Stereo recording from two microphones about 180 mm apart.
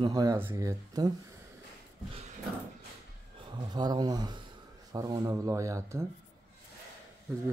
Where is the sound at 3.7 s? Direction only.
25° right (ahead or behind).